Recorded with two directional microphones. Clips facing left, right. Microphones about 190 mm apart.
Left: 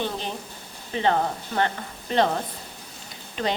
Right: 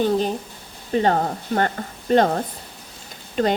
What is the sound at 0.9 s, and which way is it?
Speech, 45° right (ahead or behind).